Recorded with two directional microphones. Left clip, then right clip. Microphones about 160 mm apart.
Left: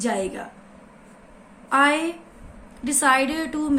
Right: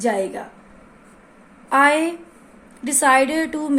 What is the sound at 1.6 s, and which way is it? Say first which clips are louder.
A woman's voice: right 3 dB; 40° right (ahead or behind).